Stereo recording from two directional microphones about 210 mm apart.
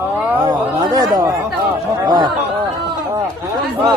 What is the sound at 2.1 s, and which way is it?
Speech, 20° right (ahead or behind).